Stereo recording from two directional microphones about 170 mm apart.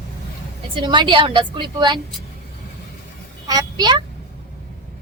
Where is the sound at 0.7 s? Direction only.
30° right (ahead or behind).